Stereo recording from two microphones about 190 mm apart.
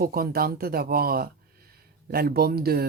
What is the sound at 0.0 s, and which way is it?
Speech, 50° right (ahead or behind).